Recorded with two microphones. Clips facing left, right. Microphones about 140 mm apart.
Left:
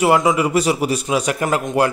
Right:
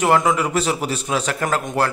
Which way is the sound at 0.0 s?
10° left (ahead or behind).